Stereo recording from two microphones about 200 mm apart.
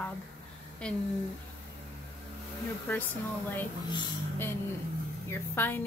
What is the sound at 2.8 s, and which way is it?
Speech, 10° left (ahead or behind).